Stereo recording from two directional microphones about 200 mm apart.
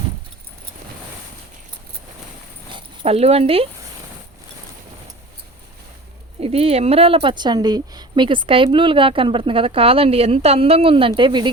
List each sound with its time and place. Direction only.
2.7 s speech: 30° right (ahead or behind)
6.4 s speech: 30° right (ahead or behind)